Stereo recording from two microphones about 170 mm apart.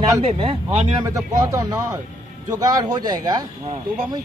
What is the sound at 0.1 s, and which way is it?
Speech, 35° right (ahead or behind).